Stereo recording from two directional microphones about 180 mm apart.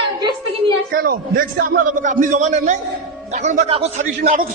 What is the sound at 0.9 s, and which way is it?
A man's voice, 55° right (ahead or behind).